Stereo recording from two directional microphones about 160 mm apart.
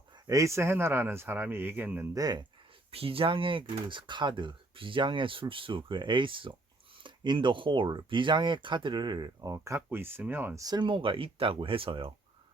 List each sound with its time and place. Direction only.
0.3 s speech: 20° right (ahead or behind)
2.1 s speech: 25° right (ahead or behind)
2.9 s speech: 35° right (ahead or behind)